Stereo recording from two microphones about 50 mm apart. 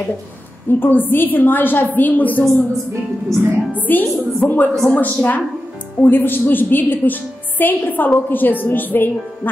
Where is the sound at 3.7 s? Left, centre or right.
Left.